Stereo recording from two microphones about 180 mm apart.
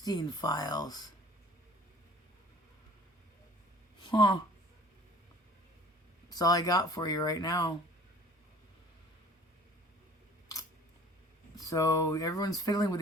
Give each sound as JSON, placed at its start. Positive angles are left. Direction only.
{"t": 0.0, "sound": "speech", "side_deg": 20}
{"t": 4.0, "sound": "a woman's voice", "side_deg": 25}
{"t": 6.2, "sound": "speech", "side_deg": 20}
{"t": 11.5, "sound": "speech", "side_deg": 20}